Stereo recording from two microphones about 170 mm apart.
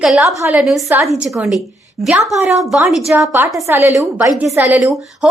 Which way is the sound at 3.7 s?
15° right (ahead or behind).